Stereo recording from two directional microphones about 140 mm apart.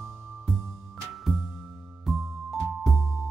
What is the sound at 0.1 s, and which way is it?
Music, centre (ahead or behind).